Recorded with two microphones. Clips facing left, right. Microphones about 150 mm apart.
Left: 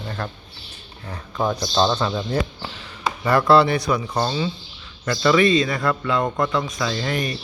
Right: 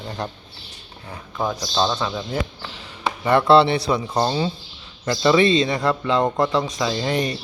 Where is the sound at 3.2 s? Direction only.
25° right (ahead or behind).